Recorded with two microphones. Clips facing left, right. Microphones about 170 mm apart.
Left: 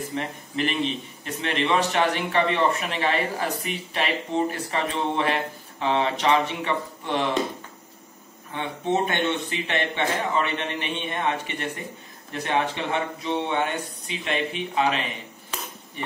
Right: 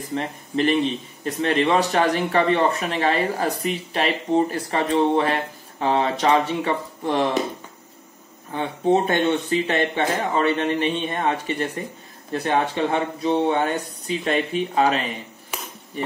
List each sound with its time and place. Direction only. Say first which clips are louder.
0.1 s speech: right 4 dB; 35° right (ahead or behind)
8.5 s speech: right 5 dB; 35° right (ahead or behind)